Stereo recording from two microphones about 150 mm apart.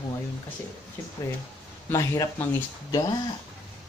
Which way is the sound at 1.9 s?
20° left (ahead or behind).